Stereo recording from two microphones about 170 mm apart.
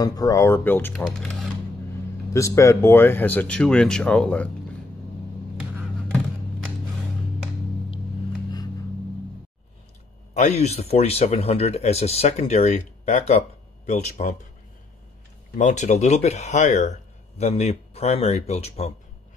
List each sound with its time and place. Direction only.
0.0 s speech: 20° left (ahead or behind); by 1.5 s centre (ahead or behind)
2.3 s speech: 15° left (ahead or behind)
10.3 s speech: 40° left (ahead or behind)
15.5 s speech: 45° left (ahead or behind)